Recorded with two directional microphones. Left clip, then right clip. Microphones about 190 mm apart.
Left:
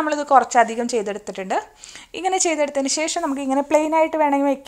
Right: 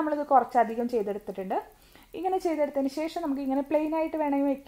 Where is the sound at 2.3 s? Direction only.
30° left (ahead or behind).